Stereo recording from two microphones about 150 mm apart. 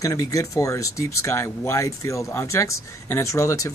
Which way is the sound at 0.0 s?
20° left (ahead or behind).